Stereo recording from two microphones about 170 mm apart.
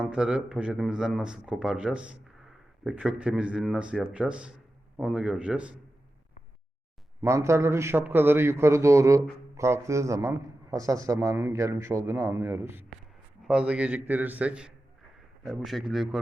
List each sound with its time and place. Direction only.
0.0 s a man's voice: 5° right (ahead or behind)
7.2 s a man's voice: 15° right (ahead or behind); by 16.2 s centre (ahead or behind)